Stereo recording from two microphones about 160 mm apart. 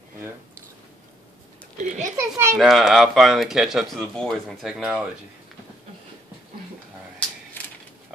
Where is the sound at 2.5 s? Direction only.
Centre (ahead or behind).